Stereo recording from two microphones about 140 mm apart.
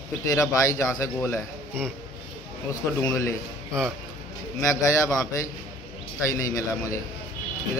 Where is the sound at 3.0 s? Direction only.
15° left (ahead or behind).